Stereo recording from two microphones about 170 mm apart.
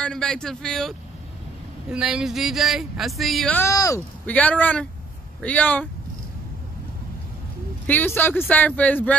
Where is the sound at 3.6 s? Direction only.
20° left (ahead or behind).